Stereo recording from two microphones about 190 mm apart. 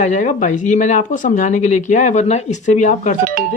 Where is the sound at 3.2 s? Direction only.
50° right (ahead or behind).